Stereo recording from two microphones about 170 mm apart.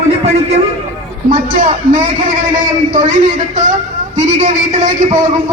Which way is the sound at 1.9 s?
50° right (ahead or behind).